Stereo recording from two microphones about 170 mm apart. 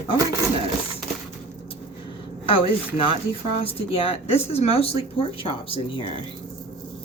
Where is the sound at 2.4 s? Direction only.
35° left (ahead or behind).